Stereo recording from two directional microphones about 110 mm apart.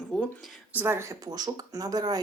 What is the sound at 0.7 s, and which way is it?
Speech, 20° right (ahead or behind).